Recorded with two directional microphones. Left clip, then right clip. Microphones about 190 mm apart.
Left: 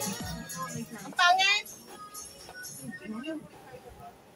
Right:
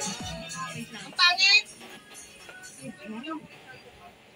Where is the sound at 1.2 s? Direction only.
55° left (ahead or behind).